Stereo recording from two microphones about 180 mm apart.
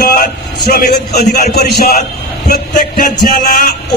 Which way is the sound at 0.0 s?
55° left (ahead or behind).